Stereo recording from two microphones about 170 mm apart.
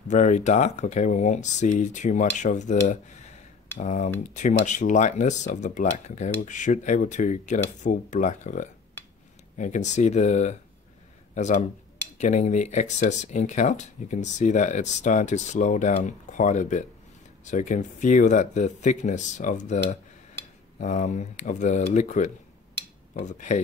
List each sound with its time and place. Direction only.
0.1 s speech: 45° left (ahead or behind)